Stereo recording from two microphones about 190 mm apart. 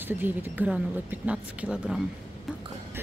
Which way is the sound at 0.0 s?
10° right (ahead or behind).